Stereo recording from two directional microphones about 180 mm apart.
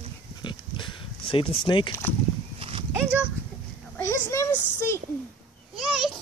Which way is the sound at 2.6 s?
30° right (ahead or behind).